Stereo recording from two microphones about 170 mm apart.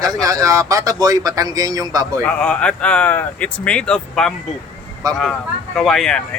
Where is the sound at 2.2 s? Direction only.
5° left (ahead or behind).